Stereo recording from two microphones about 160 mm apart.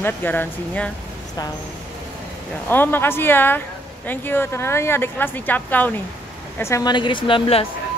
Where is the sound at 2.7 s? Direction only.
10° left (ahead or behind); by 7.7 s 35° left (ahead or behind).